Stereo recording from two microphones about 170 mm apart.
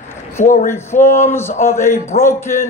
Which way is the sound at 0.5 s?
50° left (ahead or behind).